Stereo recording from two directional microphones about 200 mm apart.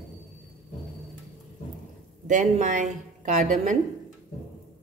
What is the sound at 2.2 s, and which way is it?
A woman's voice, 40° right (ahead or behind).